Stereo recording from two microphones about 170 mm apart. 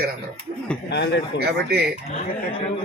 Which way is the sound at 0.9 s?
90° left.